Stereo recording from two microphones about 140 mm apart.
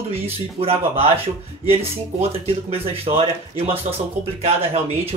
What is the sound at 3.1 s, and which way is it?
Speech, 45° right (ahead or behind).